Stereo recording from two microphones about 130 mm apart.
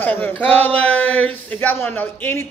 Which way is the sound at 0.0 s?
15° left (ahead or behind).